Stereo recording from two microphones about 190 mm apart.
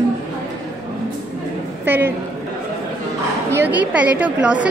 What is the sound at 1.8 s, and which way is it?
Speech, 10° right (ahead or behind).